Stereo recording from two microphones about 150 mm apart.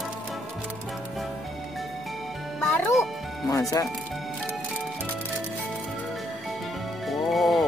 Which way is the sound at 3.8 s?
20° left (ahead or behind).